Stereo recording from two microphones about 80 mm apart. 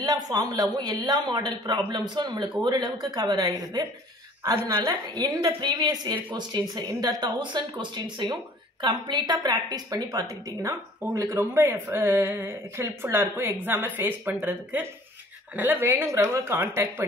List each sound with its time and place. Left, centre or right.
0.0 s speech: right
4.8 s a woman's voice: right